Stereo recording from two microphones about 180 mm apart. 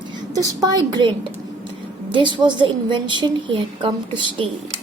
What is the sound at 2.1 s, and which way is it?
A woman's voice, 25° right (ahead or behind).